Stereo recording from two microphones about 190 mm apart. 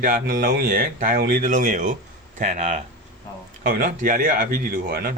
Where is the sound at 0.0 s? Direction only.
50° right (ahead or behind).